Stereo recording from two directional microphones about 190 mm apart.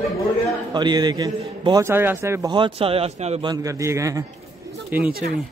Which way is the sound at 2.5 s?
25° right (ahead or behind).